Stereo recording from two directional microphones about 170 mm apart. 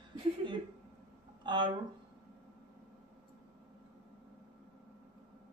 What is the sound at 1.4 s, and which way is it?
Speech, 25° right (ahead or behind).